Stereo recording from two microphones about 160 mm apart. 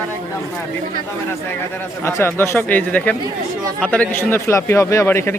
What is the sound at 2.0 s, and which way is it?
A man's voice, 15° left (ahead or behind).